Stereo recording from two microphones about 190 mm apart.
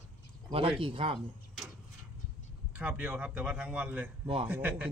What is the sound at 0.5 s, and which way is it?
Speech, 30° right (ahead or behind).